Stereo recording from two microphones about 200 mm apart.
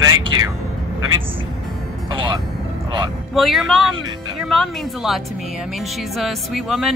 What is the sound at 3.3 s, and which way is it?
Speech, centre (ahead or behind).